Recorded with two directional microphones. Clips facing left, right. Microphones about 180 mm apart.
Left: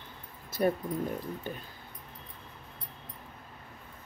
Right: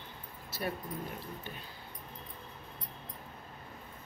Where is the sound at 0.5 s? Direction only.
45° left (ahead or behind).